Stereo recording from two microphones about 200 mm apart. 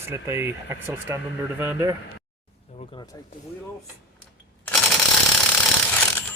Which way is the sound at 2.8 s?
20° left (ahead or behind).